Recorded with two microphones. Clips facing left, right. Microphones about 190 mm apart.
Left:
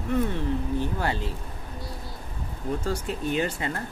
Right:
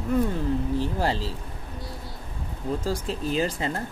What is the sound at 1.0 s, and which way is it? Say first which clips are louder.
Speech: right 2 dB; 30° right (ahead or behind).